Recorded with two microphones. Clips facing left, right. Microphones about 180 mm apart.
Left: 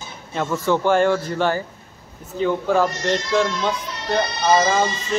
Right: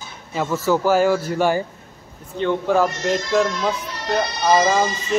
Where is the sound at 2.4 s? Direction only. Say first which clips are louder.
Even; centre (ahead or behind).